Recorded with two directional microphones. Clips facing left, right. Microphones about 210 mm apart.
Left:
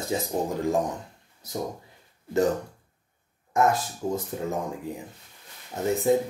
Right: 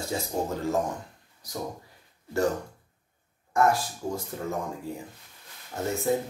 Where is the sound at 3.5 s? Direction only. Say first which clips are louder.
Left 1 dB; 20° left (ahead or behind).